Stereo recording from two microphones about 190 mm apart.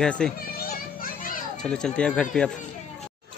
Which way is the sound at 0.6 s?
50° left (ahead or behind).